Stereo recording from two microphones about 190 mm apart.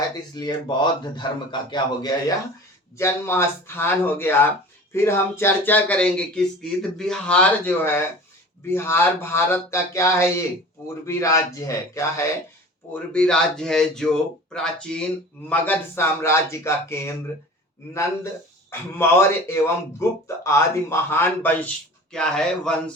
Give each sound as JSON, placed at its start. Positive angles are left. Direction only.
{"t": 0.3, "sound": "speech", "side_deg": 20}
{"t": 12.9, "sound": "speech", "side_deg": 5}